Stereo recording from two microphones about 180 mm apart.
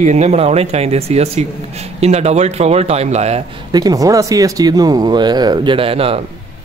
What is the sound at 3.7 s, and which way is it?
Speech, 20° right (ahead or behind).